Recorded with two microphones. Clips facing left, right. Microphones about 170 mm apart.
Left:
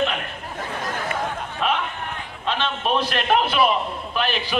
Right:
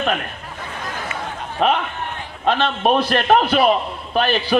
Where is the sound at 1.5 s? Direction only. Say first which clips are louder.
Right 7 dB; 50° right (ahead or behind).